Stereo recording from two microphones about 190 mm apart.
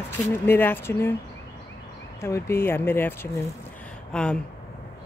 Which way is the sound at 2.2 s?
15° left (ahead or behind).